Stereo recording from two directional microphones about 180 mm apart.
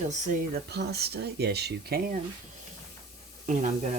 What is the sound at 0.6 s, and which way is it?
Speech, 65° right (ahead or behind).